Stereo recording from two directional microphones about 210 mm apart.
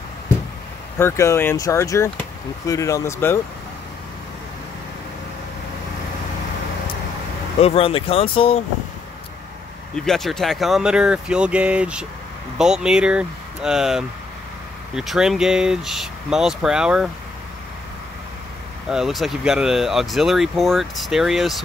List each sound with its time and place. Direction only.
0.9 s speech: 10° left (ahead or behind)
7.6 s speech: 25° left (ahead or behind)
9.9 s speech: centre (ahead or behind)
18.9 s speech: centre (ahead or behind)